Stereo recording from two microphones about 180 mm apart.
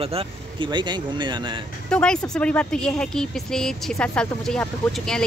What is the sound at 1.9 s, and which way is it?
Speech, 5° left (ahead or behind).